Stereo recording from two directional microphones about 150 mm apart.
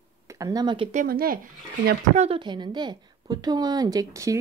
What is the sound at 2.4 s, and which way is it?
Speech, 30° right (ahead or behind).